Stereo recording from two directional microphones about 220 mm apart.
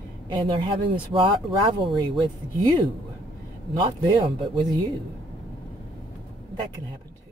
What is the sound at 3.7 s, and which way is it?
Speech, 20° right (ahead or behind).